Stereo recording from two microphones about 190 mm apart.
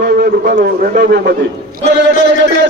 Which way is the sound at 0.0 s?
50° right (ahead or behind).